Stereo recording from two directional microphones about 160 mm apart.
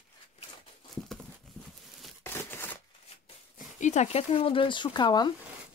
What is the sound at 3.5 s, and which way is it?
Speech, 50° left (ahead or behind).